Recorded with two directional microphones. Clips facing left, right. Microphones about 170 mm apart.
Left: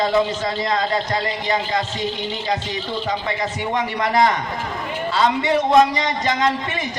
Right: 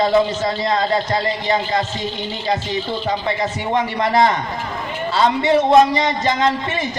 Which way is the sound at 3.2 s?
30° right (ahead or behind).